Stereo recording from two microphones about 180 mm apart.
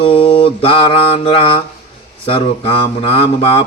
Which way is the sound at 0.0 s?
30° left (ahead or behind).